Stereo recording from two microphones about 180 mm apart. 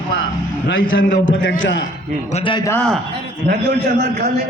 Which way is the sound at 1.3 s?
90° left.